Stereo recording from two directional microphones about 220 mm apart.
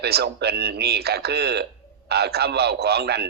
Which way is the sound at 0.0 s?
45° right (ahead or behind).